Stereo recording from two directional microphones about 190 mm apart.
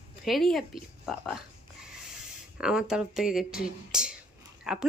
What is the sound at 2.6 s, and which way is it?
Speech, 5° right (ahead or behind).